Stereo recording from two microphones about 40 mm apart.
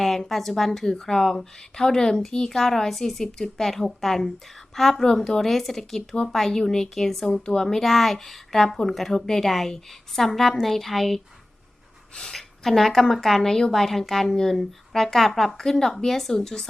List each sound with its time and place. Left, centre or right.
0.3 s a woman's voice: centre
7.3 s a woman's voice: centre
7.8 s a woman's voice: centre
12.3 s a woman's voice: centre